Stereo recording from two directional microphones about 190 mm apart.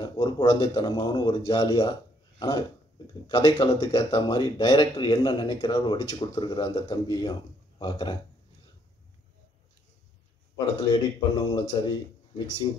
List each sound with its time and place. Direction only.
0.0 s speech: 25° left (ahead or behind)
10.9 s speech: 25° left (ahead or behind)